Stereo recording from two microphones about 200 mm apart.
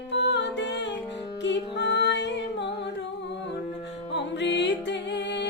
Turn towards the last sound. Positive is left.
turn(degrees=60)  # may be behind; listen again after turning